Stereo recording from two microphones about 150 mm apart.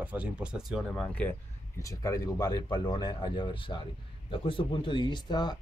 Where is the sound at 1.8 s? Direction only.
20° left (ahead or behind).